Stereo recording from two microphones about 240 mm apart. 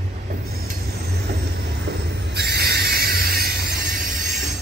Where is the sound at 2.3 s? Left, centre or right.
Right.